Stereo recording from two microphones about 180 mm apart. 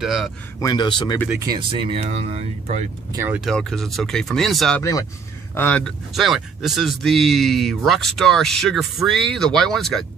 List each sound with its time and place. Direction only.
0.0 s speech: centre (ahead or behind)
0.6 s speech: 25° left (ahead or behind)
1.3 s speech: 15° right (ahead or behind)
1.7 s speech: 30° right (ahead or behind)
3.1 s speech: 15° right (ahead or behind)
3.3 s speech: centre (ahead or behind)